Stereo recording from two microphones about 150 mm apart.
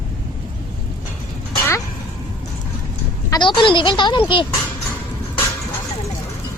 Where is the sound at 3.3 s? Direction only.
30° left (ahead or behind).